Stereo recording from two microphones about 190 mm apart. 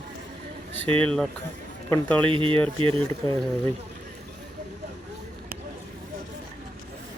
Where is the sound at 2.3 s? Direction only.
25° right (ahead or behind).